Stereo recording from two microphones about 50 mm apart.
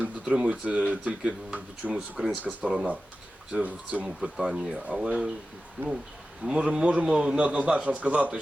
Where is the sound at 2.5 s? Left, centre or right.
Right.